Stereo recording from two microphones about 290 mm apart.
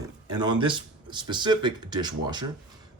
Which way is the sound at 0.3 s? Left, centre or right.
Centre.